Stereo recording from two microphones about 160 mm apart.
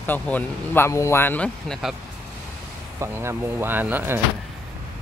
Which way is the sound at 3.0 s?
15° right (ahead or behind).